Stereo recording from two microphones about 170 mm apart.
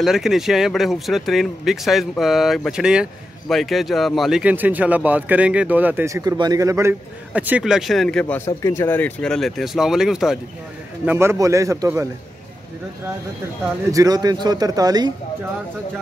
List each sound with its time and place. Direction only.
0.0 s speech: centre (ahead or behind)
11.1 s a man's voice: 15° right (ahead or behind)
13.9 s speech: 25° right (ahead or behind)